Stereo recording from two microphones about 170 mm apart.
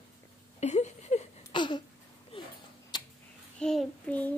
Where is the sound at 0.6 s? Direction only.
40° left (ahead or behind).